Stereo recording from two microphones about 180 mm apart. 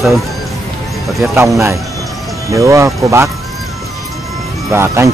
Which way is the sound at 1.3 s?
15° right (ahead or behind).